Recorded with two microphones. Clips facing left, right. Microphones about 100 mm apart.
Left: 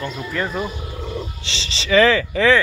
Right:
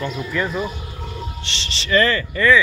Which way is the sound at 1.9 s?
90° left.